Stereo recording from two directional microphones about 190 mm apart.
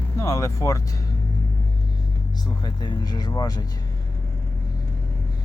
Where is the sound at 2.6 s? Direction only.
20° left (ahead or behind).